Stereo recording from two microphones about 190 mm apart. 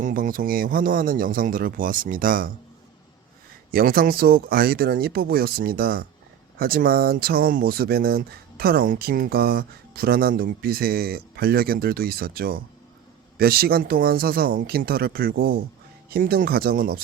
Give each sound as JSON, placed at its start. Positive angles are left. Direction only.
{"t": 0.0, "sound": "speech", "side_deg": -45}
{"t": 3.7, "sound": "speech", "side_deg": -50}